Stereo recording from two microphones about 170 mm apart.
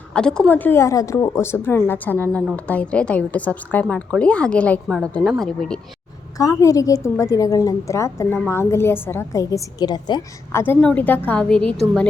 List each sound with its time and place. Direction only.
0.1 s a woman's voice: 5° left (ahead or behind)
6.3 s a woman's voice: 20° left (ahead or behind)
10.6 s a woman's voice: 10° left (ahead or behind)